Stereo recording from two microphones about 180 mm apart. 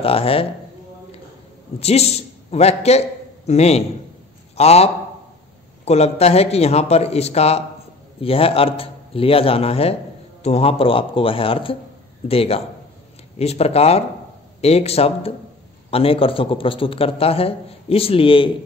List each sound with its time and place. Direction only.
0.0 s a man's voice: 30° left (ahead or behind)
1.8 s a man's voice: 35° left (ahead or behind)